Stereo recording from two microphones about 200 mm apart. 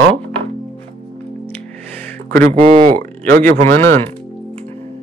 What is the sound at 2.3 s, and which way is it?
Speech, 45° right (ahead or behind).